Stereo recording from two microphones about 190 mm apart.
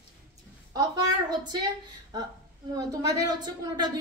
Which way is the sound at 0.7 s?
20° right (ahead or behind).